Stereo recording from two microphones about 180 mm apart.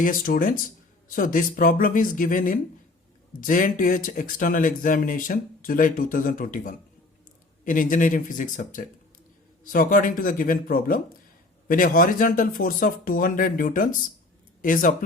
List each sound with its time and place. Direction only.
0.0 s speech: 50° left (ahead or behind)